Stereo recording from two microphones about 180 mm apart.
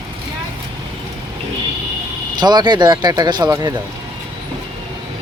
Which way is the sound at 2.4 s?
25° right (ahead or behind).